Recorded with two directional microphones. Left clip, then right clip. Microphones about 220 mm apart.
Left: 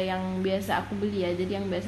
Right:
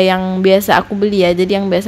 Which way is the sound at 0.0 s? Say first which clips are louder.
Right 17 dB; 45° right (ahead or behind).